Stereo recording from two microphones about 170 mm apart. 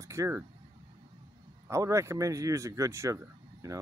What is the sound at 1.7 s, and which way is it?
Speech, 15° right (ahead or behind).